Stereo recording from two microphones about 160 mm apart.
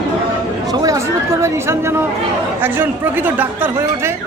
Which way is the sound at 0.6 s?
25° right (ahead or behind).